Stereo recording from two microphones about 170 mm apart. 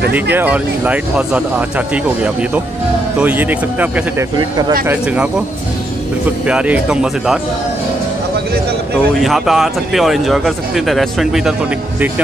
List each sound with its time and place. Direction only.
0.1 s speech: 10° right (ahead or behind)
3.2 s speech: 10° right (ahead or behind)
6.4 s speech: 5° right (ahead or behind)
9.2 s speech: centre (ahead or behind)